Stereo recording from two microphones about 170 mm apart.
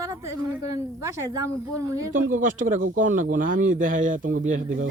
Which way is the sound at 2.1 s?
50° right (ahead or behind).